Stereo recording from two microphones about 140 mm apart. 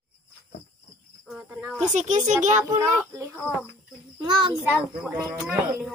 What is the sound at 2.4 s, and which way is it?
Speech, 60° right (ahead or behind).